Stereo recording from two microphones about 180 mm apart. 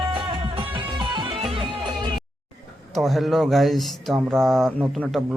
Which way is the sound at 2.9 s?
Centre (ahead or behind).